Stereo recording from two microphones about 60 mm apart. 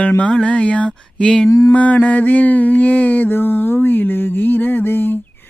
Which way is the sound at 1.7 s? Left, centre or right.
Left.